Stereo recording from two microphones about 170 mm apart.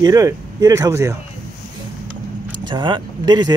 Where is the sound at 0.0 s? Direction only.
20° right (ahead or behind).